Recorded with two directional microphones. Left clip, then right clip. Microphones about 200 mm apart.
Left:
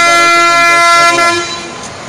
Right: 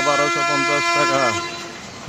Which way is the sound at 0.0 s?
45° left (ahead or behind).